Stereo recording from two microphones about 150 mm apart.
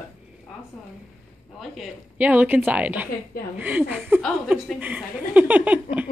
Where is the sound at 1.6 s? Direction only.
5° right (ahead or behind).